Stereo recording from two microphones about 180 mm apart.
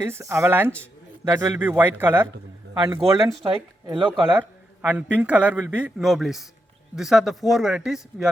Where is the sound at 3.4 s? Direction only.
30° right (ahead or behind).